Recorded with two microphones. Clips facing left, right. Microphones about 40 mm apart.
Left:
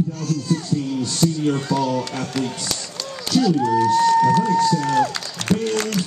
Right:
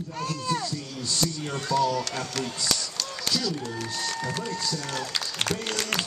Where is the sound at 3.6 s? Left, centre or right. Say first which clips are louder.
Left 16 dB; left.